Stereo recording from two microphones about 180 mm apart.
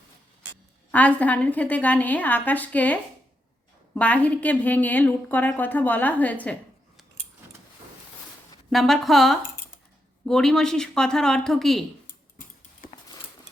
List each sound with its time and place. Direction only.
0.9 s a woman's voice: 10° left (ahead or behind)
8.7 s speech: centre (ahead or behind)
12.8 s a sound: 50° left (ahead or behind)